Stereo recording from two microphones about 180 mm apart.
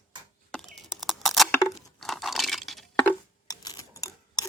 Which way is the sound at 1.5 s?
20° left (ahead or behind).